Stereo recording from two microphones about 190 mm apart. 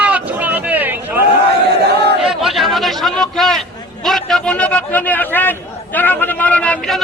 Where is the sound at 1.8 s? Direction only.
60° right (ahead or behind).